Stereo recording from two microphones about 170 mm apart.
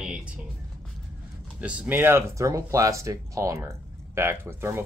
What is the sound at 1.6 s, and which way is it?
Speech, 10° right (ahead or behind).